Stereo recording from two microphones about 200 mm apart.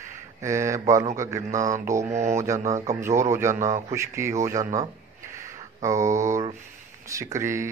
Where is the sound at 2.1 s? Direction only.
35° right (ahead or behind).